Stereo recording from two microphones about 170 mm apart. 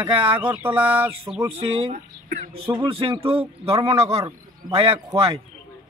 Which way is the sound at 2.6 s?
30° right (ahead or behind).